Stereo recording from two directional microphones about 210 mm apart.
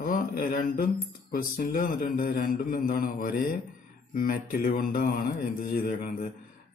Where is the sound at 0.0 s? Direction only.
45° left (ahead or behind).